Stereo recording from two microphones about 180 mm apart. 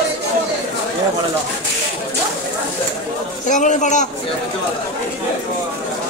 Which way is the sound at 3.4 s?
45° left (ahead or behind).